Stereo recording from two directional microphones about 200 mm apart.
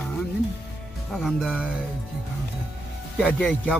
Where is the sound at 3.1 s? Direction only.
5° left (ahead or behind).